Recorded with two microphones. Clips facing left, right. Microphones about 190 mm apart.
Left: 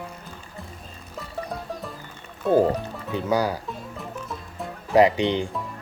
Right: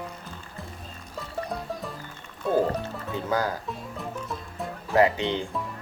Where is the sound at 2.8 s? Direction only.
15° left (ahead or behind).